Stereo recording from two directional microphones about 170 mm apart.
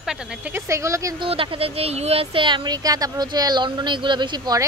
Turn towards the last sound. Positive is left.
turn(degrees=-25)  # may be behind; listen again after turning